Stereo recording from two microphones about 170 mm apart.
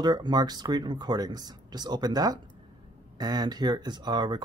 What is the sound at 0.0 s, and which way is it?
Speech, 25° right (ahead or behind).